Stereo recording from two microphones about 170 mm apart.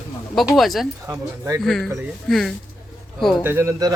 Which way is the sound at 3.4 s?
15° right (ahead or behind).